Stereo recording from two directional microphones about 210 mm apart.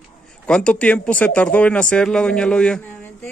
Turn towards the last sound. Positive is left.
turn(degrees=5)  # may be behind; listen again after turning